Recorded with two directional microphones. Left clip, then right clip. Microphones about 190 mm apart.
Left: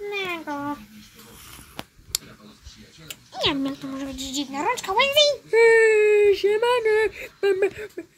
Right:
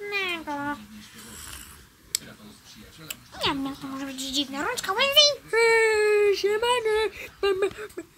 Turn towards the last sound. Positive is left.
turn(degrees=5)  # may be behind; listen again after turning